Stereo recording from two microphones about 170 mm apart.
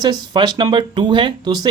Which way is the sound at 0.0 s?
25° right (ahead or behind).